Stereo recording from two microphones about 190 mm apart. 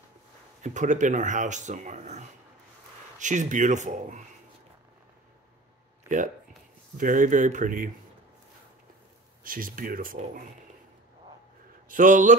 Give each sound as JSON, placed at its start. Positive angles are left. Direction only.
{"t": 0.6, "sound": "speech", "side_deg": -40}
{"t": 6.0, "sound": "speech", "side_deg": -40}
{"t": 9.4, "sound": "speech", "side_deg": -45}
{"t": 11.9, "sound": "speech", "side_deg": -40}